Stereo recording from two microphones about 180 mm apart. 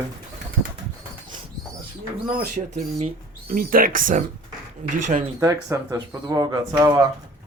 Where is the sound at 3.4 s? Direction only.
55° right (ahead or behind).